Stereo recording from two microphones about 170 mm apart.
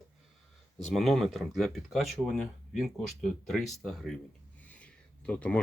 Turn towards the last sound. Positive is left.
turn(degrees=5)  # may be behind; listen again after turning